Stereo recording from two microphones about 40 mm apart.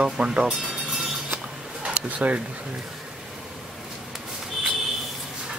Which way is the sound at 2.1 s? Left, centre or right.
Right.